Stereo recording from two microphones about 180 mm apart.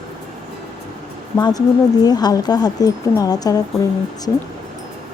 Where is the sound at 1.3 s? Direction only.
20° left (ahead or behind).